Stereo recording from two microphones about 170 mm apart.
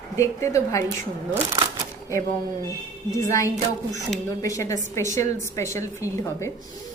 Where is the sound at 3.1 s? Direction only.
20° left (ahead or behind).